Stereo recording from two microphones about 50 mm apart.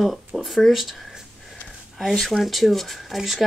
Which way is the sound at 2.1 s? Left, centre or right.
Centre.